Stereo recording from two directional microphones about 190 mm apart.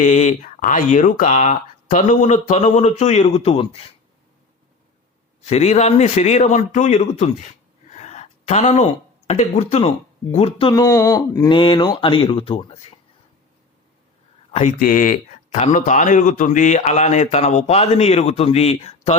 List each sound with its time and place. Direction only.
0.0 s speech: 35° left (ahead or behind)
5.5 s a man's voice: 35° left (ahead or behind)
14.5 s speech: 45° left (ahead or behind)